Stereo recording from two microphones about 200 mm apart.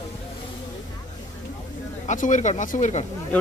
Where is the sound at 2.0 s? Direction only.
40° left (ahead or behind).